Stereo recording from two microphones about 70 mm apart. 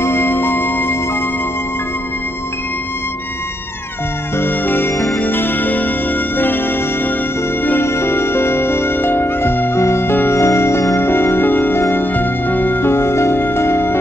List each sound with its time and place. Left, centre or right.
0.0 s music: left
4.4 s music: left
7.6 s music: left
11.0 s music: left